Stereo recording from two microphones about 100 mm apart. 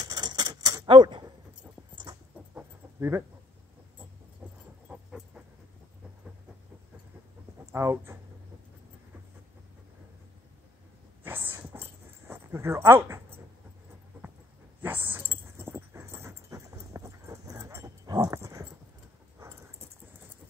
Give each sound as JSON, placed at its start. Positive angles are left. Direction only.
{"t": 0.0, "sound": "keys jangling", "side_deg": -45}
{"t": 3.0, "sound": "speech", "side_deg": -25}
{"t": 4.8, "sound": "dog", "side_deg": -10}
{"t": 7.7, "sound": "speech", "side_deg": -25}
{"t": 11.2, "sound": "dog", "side_deg": -20}
{"t": 14.8, "sound": "dog", "side_deg": -20}
{"t": 18.3, "sound": "dog", "side_deg": -30}